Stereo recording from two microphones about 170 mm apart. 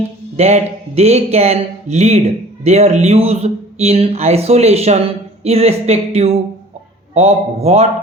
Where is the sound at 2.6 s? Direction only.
40° right (ahead or behind).